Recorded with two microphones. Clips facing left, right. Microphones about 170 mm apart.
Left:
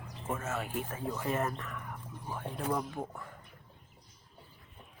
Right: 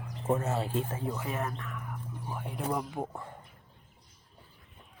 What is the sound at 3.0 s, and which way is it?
Speech, 25° right (ahead or behind).